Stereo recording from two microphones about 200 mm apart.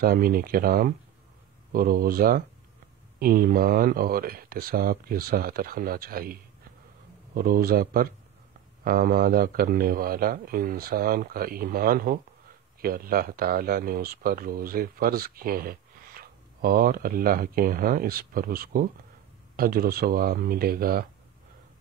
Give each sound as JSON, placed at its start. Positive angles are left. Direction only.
{"t": 0.0, "sound": "speech", "side_deg": -45}
{"t": 7.3, "sound": "speech", "side_deg": -45}